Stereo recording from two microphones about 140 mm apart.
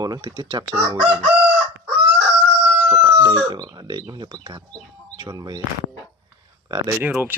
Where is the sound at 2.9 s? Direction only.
30° right (ahead or behind).